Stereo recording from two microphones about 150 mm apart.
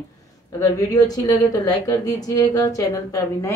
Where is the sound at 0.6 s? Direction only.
25° left (ahead or behind).